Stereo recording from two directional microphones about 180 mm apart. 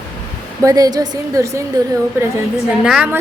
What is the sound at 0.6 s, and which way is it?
A woman's voice, 20° right (ahead or behind).